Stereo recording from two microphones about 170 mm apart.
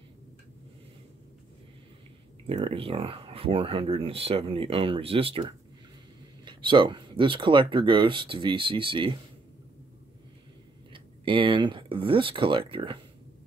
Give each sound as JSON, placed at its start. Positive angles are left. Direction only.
{"t": 2.4, "sound": "speech", "side_deg": -35}
{"t": 10.9, "sound": "speech", "side_deg": -30}